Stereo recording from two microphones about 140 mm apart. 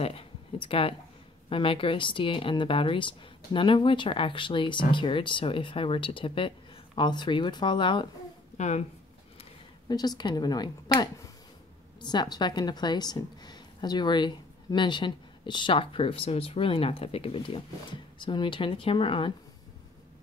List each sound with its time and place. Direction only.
0.0 s a sound: 45° left (ahead or behind)
1.5 s a woman's voice: 40° left (ahead or behind)
8.5 s speech: 55° left (ahead or behind)
9.8 s a woman's voice: 30° left (ahead or behind)